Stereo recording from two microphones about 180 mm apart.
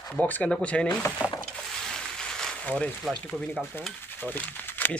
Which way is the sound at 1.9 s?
5° left (ahead or behind).